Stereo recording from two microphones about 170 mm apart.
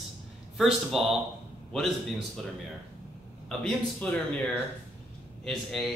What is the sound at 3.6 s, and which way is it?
Speech, 10° left (ahead or behind).